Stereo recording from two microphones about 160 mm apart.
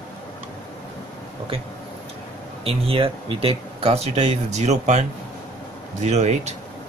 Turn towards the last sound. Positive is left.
turn(degrees=-45)  # may be behind; listen again after turning